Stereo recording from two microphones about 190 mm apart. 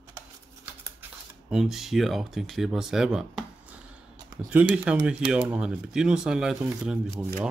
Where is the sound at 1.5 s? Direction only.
Centre (ahead or behind).